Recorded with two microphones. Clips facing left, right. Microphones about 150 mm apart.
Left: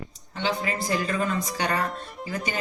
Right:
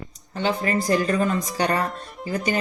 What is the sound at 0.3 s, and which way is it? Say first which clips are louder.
A woman's voice: right 4 dB; 45° right (ahead or behind).